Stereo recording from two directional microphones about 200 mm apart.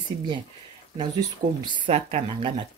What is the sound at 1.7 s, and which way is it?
Speech, 25° right (ahead or behind).